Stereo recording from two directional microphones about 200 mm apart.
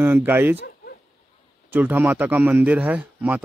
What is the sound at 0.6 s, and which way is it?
Bow-wow, 50° left (ahead or behind).